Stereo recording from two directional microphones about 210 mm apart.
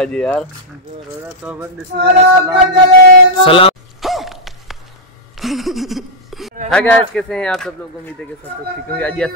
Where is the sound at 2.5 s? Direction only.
40° right (ahead or behind).